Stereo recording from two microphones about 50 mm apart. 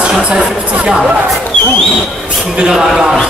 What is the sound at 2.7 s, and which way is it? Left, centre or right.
Speech, centre.